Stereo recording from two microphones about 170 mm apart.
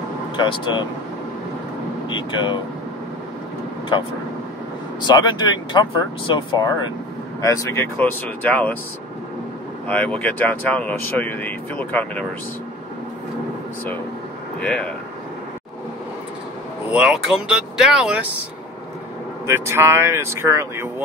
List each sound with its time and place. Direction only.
0.4 s speech: 25° left (ahead or behind)
2.0 s speech: 30° left (ahead or behind)
5.0 s speech: 25° left (ahead or behind); by 8.7 s 10° left (ahead or behind)
9.8 s speech: 5° left (ahead or behind)
14.6 s speech: 5° left (ahead or behind)
16.9 s speech: 5° right (ahead or behind)
19.4 s speech: 15° right (ahead or behind)